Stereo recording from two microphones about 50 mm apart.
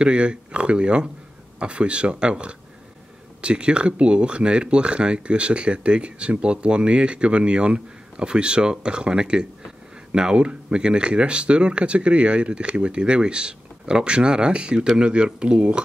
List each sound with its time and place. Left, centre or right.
0.0 s speech: centre